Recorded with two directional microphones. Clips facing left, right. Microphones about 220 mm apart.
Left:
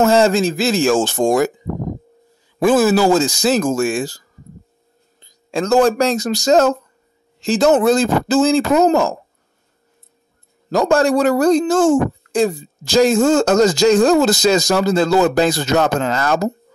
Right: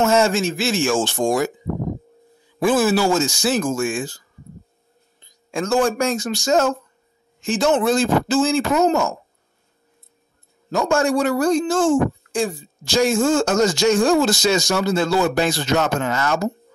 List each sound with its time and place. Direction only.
0.0 s speech: 35° left (ahead or behind)
2.6 s speech: 40° left (ahead or behind)
5.2 s speech: 35° left (ahead or behind)
10.9 s speech: 40° left (ahead or behind)